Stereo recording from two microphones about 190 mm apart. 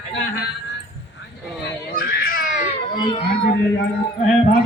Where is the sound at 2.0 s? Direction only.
50° left (ahead or behind).